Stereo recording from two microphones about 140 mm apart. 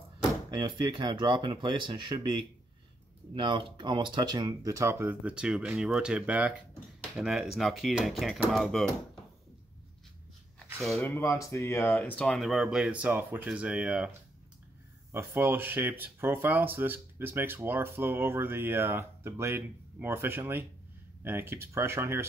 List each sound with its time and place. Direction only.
0.6 s speech: 35° right (ahead or behind)
3.3 s speech: 35° right (ahead or behind); by 8.9 s centre (ahead or behind)
11.0 s speech: 15° left (ahead or behind); by 14.1 s 5° right (ahead or behind)
15.1 s speech: 15° right (ahead or behind)